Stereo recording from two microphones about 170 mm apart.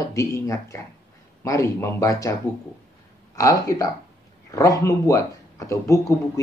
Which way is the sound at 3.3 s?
20° left (ahead or behind).